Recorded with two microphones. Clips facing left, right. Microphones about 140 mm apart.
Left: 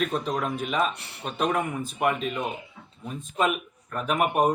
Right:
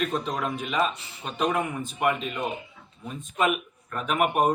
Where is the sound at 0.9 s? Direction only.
65° left (ahead or behind).